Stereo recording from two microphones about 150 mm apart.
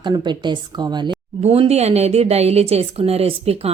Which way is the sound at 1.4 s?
45° right (ahead or behind).